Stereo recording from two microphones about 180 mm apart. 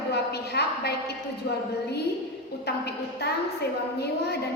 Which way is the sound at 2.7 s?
65° left (ahead or behind).